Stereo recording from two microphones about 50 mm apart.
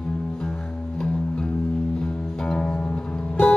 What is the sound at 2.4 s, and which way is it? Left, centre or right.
Music, centre.